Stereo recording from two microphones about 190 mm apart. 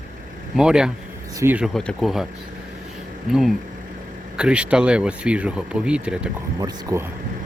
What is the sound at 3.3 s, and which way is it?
Speech, centre (ahead or behind).